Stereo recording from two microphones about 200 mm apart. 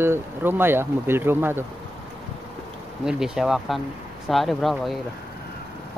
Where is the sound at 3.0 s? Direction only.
5° right (ahead or behind).